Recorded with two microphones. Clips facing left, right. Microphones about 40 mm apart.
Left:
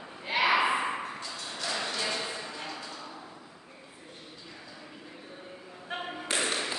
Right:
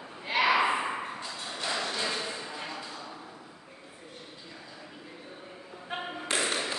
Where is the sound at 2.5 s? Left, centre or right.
Centre.